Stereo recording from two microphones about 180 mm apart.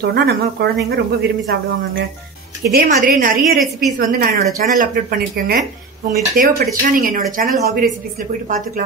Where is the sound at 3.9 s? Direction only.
55° right (ahead or behind).